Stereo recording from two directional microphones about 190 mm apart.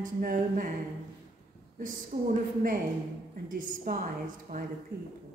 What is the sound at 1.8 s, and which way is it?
A woman's voice, 45° right (ahead or behind).